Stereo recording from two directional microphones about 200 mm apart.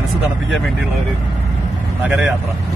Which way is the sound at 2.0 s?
5° right (ahead or behind).